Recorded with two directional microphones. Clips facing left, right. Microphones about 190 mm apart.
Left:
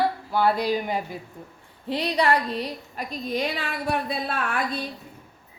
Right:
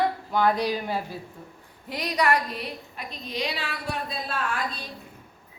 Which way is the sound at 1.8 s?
30° left (ahead or behind).